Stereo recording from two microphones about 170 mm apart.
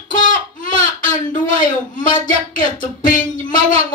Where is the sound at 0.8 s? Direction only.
50° left (ahead or behind).